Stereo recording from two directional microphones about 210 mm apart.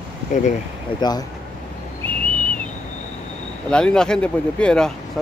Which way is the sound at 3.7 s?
5° left (ahead or behind).